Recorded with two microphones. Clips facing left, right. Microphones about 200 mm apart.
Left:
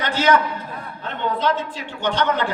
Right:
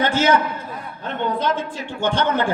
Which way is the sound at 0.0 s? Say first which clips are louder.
Right 4 dB; 50° right (ahead or behind).